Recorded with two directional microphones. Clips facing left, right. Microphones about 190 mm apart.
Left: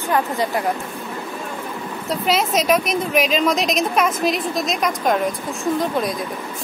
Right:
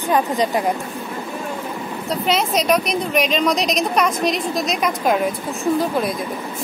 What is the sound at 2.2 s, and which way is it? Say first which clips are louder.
A woman's voice: even; centre (ahead or behind).